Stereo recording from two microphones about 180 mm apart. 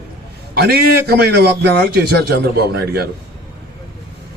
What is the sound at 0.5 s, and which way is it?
A man's voice, 60° right (ahead or behind).